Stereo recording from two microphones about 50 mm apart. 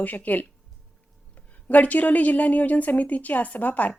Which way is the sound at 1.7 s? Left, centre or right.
Left.